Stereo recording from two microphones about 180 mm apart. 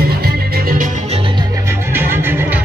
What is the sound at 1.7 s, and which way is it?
Music, 10° right (ahead or behind).